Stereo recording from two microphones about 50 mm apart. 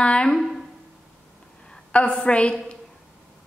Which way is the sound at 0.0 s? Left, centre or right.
Left.